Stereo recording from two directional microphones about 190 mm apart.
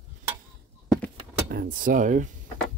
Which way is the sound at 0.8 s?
Centre (ahead or behind).